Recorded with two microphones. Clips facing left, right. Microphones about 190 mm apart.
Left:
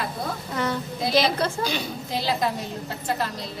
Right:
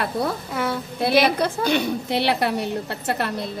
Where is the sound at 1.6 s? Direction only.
65° right (ahead or behind).